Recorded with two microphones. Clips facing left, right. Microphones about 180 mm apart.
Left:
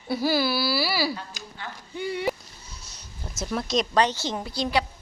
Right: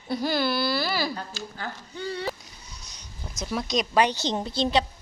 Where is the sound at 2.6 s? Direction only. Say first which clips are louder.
Left 1 dB; centre (ahead or behind).